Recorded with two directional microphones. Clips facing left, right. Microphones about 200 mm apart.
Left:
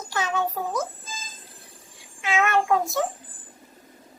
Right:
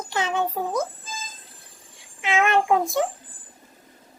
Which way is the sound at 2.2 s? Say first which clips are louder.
Right 2 dB; 20° right (ahead or behind).